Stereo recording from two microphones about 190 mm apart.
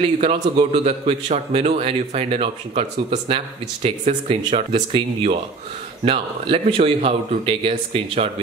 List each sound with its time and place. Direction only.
0.0 s a man's voice: 30° right (ahead or behind)